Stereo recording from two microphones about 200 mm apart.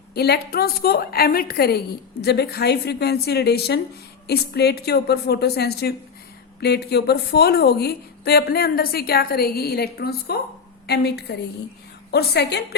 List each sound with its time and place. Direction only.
0.1 s a woman's voice: 55° left (ahead or behind)